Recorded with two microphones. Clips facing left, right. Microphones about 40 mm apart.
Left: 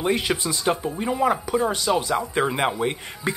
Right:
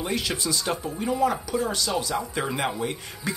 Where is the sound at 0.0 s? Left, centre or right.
Left.